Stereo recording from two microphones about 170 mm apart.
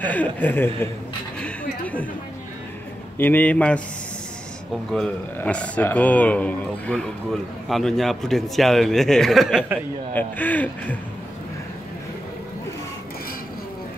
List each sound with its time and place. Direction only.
0.0 s speech: 10° left (ahead or behind)
1.4 s a sound: 10° left (ahead or behind)
3.2 s speech: 10° left (ahead or behind)
4.9 s a man's voice: 5° left (ahead or behind)
10.1 s speech: 10° left (ahead or behind)